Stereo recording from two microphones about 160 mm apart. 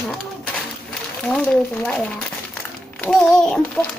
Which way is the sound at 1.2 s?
10° left (ahead or behind).